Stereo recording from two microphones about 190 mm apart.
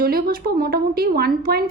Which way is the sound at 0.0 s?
50° right (ahead or behind).